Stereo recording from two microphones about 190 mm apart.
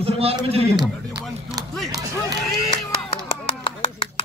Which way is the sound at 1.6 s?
20° right (ahead or behind).